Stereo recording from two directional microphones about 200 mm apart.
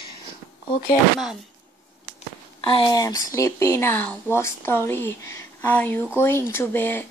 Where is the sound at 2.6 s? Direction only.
25° left (ahead or behind).